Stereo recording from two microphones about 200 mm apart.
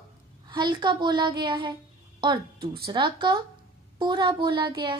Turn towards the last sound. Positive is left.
turn(degrees=-25)  # may be behind; listen again after turning